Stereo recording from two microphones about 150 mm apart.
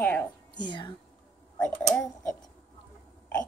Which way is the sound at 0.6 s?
30° left (ahead or behind).